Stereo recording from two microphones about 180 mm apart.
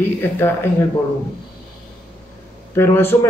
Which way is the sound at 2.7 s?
15° left (ahead or behind).